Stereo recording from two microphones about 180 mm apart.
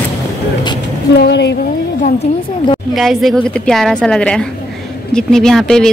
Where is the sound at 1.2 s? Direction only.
65° left (ahead or behind).